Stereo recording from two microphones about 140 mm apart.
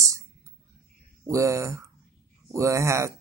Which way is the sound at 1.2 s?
20° right (ahead or behind).